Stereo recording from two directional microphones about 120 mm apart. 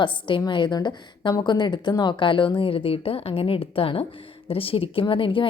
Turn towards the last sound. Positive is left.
turn(degrees=45)  # may be behind; listen again after turning